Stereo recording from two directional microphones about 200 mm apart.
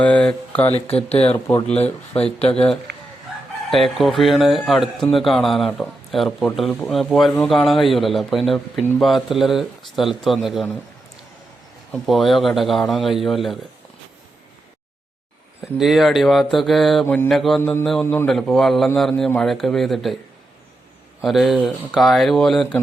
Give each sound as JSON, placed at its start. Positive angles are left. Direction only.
{"t": 0.0, "sound": "speech", "side_deg": 5}
{"t": 0.7, "sound": "speech", "side_deg": 30}
{"t": 2.9, "sound": "chicken", "side_deg": -55}
{"t": 3.7, "sound": "speech", "side_deg": 0}
{"t": 11.9, "sound": "speech", "side_deg": 0}
{"t": 15.8, "sound": "speech", "side_deg": 0}
{"t": 17.6, "sound": "mantra", "side_deg": 10}
{"t": 17.8, "sound": "speech", "side_deg": 0}
{"t": 21.2, "sound": "speech", "side_deg": 0}